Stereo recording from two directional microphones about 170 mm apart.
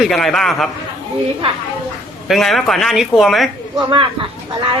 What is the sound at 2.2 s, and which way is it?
A man's voice, centre (ahead or behind).